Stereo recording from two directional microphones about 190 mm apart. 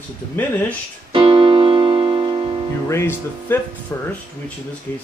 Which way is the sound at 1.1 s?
30° right (ahead or behind).